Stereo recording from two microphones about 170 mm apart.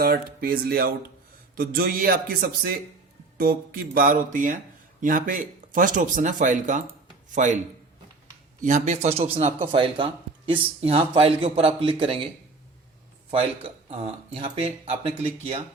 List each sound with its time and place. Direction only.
0.0 s speech: 60° right (ahead or behind)
8.6 s speech: 45° right (ahead or behind)
13.9 s speech: 35° right (ahead or behind)